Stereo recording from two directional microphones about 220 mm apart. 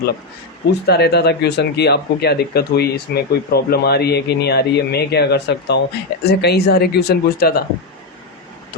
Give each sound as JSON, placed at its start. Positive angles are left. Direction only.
{"t": 0.7, "sound": "speech", "side_deg": 45}